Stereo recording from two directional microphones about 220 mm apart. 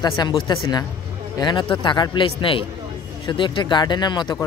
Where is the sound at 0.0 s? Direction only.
20° left (ahead or behind).